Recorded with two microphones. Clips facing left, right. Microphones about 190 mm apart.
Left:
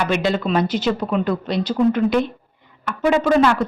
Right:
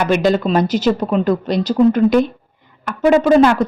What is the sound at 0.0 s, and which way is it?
Speech, 45° right (ahead or behind).